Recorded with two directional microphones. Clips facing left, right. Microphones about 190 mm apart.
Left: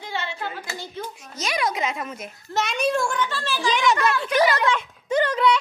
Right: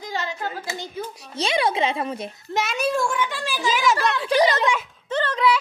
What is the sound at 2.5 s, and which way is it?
Speech, 5° right (ahead or behind).